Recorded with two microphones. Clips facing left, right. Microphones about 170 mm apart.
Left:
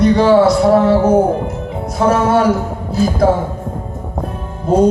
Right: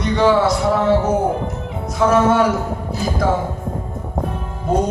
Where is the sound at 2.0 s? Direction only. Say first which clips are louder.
Left 2 dB; 35° left (ahead or behind).